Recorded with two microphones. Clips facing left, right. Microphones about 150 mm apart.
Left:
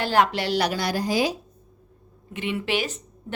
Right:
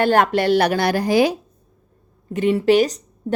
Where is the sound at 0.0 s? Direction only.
50° right (ahead or behind).